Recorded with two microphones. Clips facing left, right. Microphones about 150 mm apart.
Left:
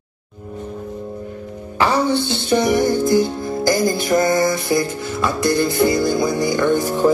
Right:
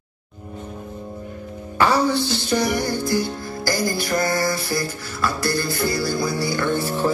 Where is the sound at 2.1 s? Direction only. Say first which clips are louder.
Left 4 dB; 25° left (ahead or behind).